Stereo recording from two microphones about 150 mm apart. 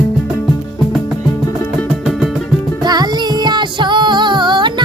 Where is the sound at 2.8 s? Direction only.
25° right (ahead or behind).